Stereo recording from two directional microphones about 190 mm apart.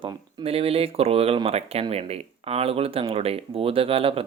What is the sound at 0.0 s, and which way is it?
Speech, 30° right (ahead or behind).